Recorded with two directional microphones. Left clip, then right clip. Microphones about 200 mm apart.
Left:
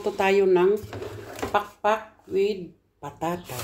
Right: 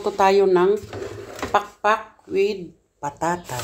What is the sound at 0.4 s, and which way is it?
Speech, 15° right (ahead or behind).